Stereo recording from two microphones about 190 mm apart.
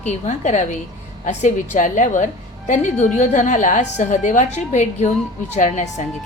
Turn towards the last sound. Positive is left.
turn(degrees=40)  # may be behind; listen again after turning